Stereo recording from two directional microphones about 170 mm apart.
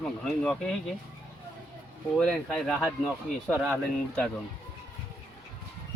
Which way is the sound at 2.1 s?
5° left (ahead or behind).